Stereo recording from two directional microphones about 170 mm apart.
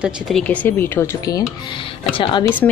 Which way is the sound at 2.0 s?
30° left (ahead or behind).